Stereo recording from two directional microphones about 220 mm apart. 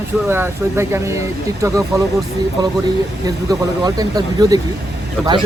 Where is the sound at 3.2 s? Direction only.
15° right (ahead or behind).